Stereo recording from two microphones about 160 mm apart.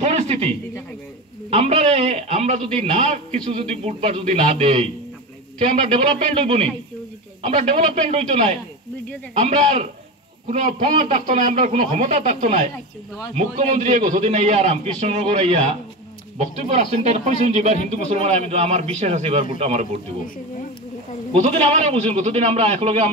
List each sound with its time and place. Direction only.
0.0 s a sound: 40° right (ahead or behind)
1.5 s a man's voice: 40° right (ahead or behind)
7.7 s a man's voice: 40° right (ahead or behind)
21.3 s a man's voice: 40° right (ahead or behind)